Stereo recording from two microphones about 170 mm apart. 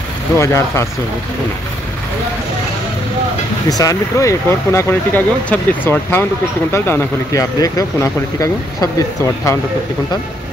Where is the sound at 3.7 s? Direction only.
20° left (ahead or behind).